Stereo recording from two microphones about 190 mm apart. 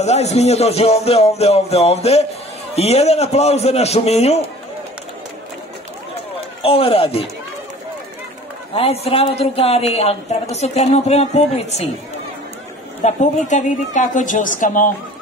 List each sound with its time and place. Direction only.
0.0 s music: 35° left (ahead or behind)
6.6 s a man's voice: 30° left (ahead or behind)
8.7 s music: 30° left (ahead or behind)
13.5 s music: 40° left (ahead or behind)
14.6 s speech: 45° left (ahead or behind)